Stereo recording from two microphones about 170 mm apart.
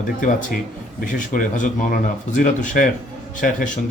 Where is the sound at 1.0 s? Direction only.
50° left (ahead or behind).